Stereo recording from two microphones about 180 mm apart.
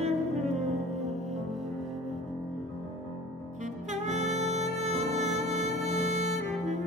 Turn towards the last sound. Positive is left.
turn(degrees=-40)  # may be behind; listen again after turning